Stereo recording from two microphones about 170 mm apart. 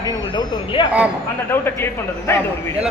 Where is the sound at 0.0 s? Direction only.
25° left (ahead or behind).